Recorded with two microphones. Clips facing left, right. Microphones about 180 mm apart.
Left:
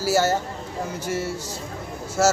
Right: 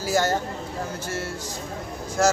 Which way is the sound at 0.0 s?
5° left (ahead or behind).